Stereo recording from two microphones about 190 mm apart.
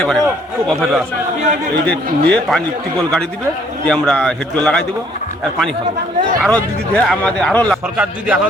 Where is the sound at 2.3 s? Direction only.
5° left (ahead or behind).